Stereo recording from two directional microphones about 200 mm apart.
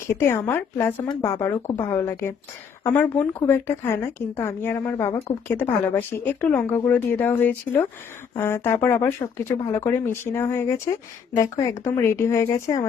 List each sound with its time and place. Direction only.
0.1 s a woman's voice: 10° left (ahead or behind)